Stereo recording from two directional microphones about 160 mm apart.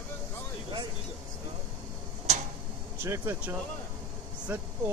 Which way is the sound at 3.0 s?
15° right (ahead or behind).